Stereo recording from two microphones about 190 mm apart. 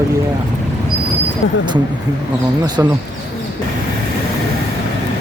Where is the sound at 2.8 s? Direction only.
15° right (ahead or behind).